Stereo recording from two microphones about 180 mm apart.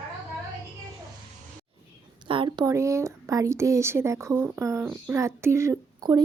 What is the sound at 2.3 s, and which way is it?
A woman's voice, 25° right (ahead or behind).